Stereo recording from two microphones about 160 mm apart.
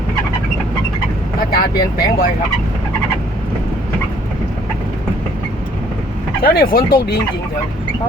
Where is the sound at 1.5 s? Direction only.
75° left (ahead or behind).